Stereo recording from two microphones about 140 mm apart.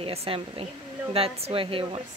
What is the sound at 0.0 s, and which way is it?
Speech, 45° right (ahead or behind).